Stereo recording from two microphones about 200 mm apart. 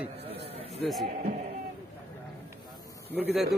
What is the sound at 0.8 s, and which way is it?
Speech, centre (ahead or behind).